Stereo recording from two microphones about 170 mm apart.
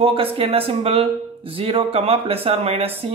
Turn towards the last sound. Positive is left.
turn(degrees=-35)  # may be behind; listen again after turning